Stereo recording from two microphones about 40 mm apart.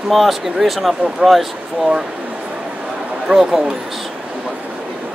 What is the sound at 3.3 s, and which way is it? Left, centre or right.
Speech, right.